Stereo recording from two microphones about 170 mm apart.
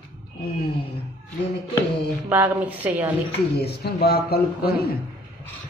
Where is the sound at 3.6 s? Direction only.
65° left (ahead or behind).